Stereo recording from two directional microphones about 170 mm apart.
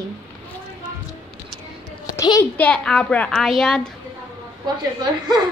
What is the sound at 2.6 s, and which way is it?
A woman's voice, 5° left (ahead or behind).